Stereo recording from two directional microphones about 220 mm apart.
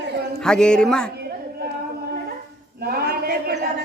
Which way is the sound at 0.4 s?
5° left (ahead or behind).